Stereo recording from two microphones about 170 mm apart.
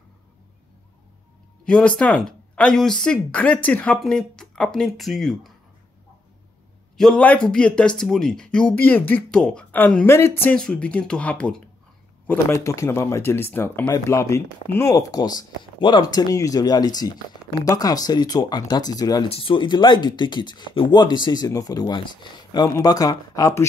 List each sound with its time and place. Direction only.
1.6 s speech: 5° left (ahead or behind)
7.0 s speech: 5° left (ahead or behind); by 19.2 s 20° left (ahead or behind)
19.2 s speech: 35° left (ahead or behind)